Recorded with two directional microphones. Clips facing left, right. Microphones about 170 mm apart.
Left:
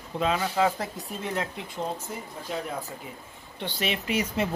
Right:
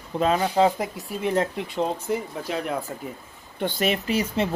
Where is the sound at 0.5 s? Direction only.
20° right (ahead or behind).